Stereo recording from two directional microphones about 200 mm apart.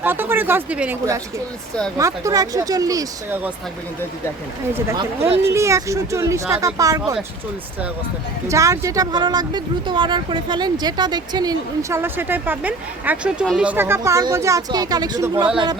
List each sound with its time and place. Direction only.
0.0 s speech: 10° right (ahead or behind)
5.4 s speech: 15° right (ahead or behind)
8.4 s speech: 15° right (ahead or behind)